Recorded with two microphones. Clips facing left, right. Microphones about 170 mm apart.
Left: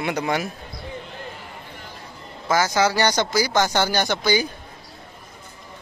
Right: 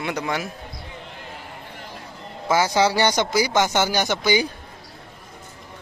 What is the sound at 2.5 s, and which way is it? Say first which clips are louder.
Speech: right 1 dB; 25° right (ahead or behind).